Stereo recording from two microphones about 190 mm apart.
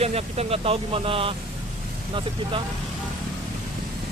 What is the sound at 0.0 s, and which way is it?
Speech, 35° right (ahead or behind).